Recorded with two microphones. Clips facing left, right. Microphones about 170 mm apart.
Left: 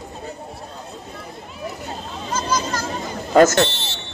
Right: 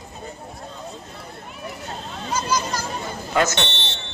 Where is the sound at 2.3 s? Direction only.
10° right (ahead or behind).